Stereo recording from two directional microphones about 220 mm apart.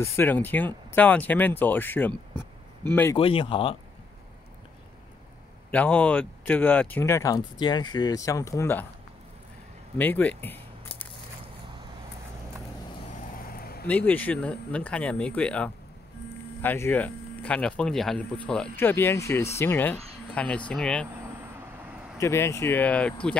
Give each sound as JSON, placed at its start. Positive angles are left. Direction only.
{"t": 0.0, "sound": "speech", "side_deg": 10}
{"t": 3.2, "sound": "speech", "side_deg": 25}
{"t": 5.7, "sound": "speech", "side_deg": 5}
{"t": 9.9, "sound": "a sound", "side_deg": 10}
{"t": 13.1, "sound": "vehicle", "side_deg": 35}
{"t": 13.8, "sound": "speech", "side_deg": 5}
{"t": 21.5, "sound": "vehicle", "side_deg": -5}
{"t": 22.2, "sound": "speech", "side_deg": 15}